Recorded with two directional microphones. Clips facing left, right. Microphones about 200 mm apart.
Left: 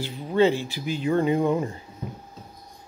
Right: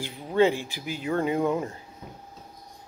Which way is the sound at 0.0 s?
10° right (ahead or behind).